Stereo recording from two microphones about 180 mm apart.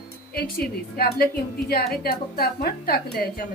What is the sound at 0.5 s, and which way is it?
A woman's voice, 60° left (ahead or behind).